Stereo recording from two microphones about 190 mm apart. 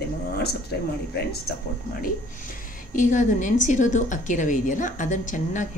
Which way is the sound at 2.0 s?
45° left (ahead or behind).